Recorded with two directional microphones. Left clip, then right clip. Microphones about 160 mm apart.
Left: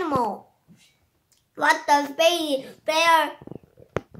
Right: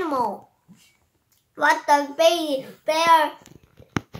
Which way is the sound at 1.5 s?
15° left (ahead or behind).